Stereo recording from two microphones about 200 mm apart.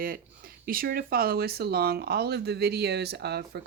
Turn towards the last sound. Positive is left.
turn(degrees=-55)  # may be behind; listen again after turning